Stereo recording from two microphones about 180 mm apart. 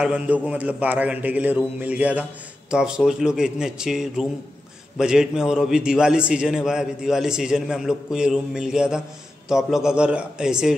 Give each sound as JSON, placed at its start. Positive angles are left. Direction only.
{"t": 0.0, "sound": "a man's voice", "side_deg": -5}